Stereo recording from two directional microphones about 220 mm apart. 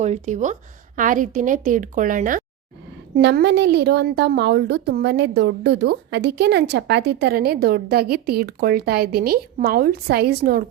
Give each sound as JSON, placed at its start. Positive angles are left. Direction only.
{"t": 0.0, "sound": "a woman's voice", "side_deg": -30}
{"t": 3.2, "sound": "a woman's voice", "side_deg": -50}